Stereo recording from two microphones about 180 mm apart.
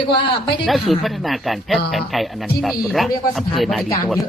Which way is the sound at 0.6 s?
Centre (ahead or behind).